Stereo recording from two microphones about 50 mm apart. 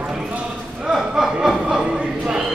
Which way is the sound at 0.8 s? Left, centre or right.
Centre.